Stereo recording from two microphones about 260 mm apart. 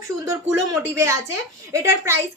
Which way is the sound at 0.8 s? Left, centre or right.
Centre.